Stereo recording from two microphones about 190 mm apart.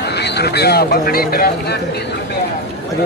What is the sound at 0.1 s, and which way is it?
Speech, 60° left (ahead or behind).